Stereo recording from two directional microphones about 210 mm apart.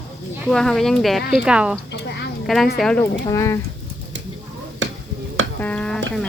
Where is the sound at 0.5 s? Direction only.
Centre (ahead or behind).